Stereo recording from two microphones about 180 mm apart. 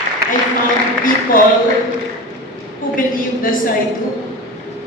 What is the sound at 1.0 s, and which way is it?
Speech, 50° left (ahead or behind).